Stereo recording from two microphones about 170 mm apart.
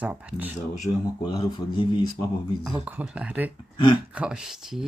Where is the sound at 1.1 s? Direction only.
25° left (ahead or behind).